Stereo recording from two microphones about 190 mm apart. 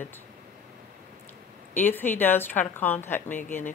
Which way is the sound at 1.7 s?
10° left (ahead or behind).